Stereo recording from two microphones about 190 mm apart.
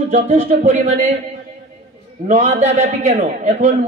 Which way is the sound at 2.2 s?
35° right (ahead or behind).